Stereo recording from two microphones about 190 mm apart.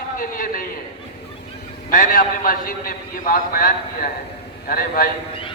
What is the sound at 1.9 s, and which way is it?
A man's voice, 45° left (ahead or behind).